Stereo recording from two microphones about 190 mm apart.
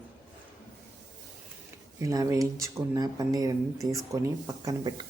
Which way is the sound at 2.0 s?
20° right (ahead or behind).